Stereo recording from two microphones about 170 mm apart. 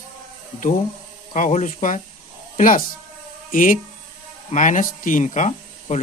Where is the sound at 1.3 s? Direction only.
45° left (ahead or behind).